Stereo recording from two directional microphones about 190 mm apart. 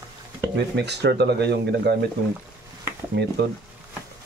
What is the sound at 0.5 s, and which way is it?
Speech, 60° right (ahead or behind).